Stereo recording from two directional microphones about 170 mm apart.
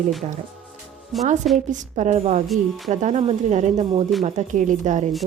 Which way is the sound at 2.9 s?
45° right (ahead or behind).